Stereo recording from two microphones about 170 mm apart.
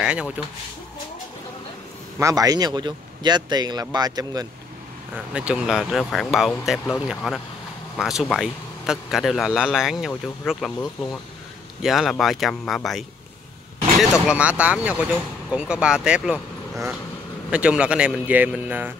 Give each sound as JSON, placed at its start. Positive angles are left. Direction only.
{"t": 0.0, "sound": "speech", "side_deg": -5}
{"t": 2.1, "sound": "speech", "side_deg": -20}
{"t": 5.1, "sound": "speech", "side_deg": -5}
{"t": 11.8, "sound": "speech", "side_deg": 0}